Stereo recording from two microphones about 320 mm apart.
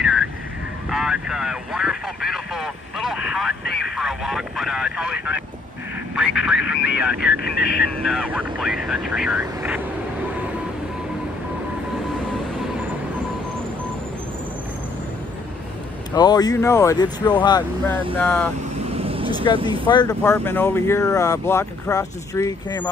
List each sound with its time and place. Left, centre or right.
0.0 s vehicle: centre
3.9 s speech: centre
7.2 s speech: left
7.9 s speech: centre
16.2 s speech: centre
18.9 s vehicle: centre
19.9 s speech: centre